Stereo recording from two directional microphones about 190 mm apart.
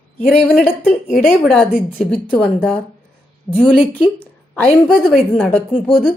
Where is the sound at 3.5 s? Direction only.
5° left (ahead or behind).